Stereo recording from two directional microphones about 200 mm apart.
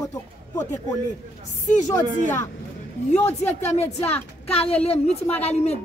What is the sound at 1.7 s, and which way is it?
Speech, 35° left (ahead or behind).